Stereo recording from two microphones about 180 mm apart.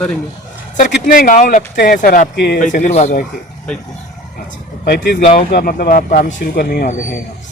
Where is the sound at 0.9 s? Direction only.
55° left (ahead or behind).